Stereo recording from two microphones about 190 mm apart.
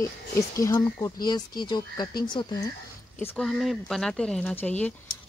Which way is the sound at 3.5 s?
Centre (ahead or behind).